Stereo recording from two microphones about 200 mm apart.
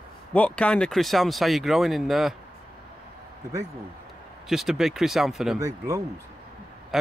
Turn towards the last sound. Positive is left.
turn(degrees=-15)  # may be behind; listen again after turning